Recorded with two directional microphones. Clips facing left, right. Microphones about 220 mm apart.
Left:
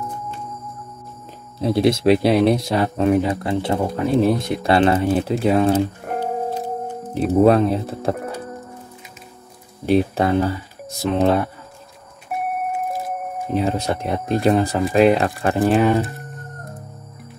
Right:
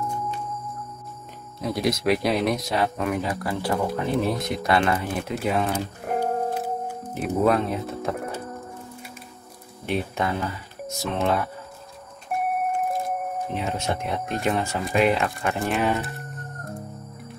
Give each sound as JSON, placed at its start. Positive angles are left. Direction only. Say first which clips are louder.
{"t": 1.6, "sound": "speech", "louder": "left 7 dB", "side_deg": 30}
{"t": 6.0, "sound": "music", "louder": "left 1 dB", "side_deg": 0}
{"t": 7.4, "sound": "speech", "louder": "left 5 dB", "side_deg": 30}
{"t": 9.8, "sound": "speech", "louder": "left 9 dB", "side_deg": 35}
{"t": 12.3, "sound": "a sound", "louder": "left 1 dB", "side_deg": 5}
{"t": 13.6, "sound": "speech", "louder": "left 9 dB", "side_deg": 35}